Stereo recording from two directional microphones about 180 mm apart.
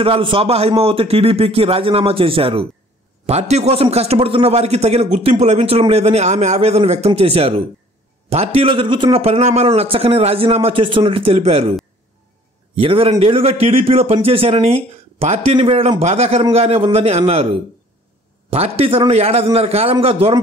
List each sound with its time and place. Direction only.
0.0 s a man's voice: 30° right (ahead or behind)
12.7 s a man's voice: 30° right (ahead or behind)